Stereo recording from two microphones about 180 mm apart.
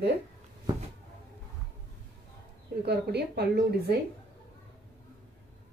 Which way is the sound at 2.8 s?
65° right (ahead or behind).